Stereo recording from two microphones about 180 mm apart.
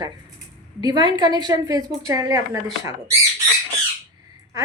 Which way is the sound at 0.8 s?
20° right (ahead or behind).